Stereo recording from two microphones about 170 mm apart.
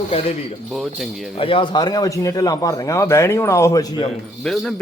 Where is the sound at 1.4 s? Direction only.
30° left (ahead or behind).